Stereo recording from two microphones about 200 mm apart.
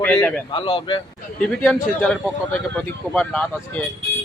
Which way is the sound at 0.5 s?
25° left (ahead or behind).